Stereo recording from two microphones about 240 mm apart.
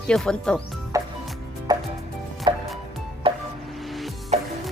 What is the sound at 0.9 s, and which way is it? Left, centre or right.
Music, centre.